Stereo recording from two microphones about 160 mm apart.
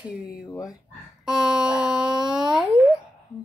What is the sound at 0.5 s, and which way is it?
Speech, 20° left (ahead or behind).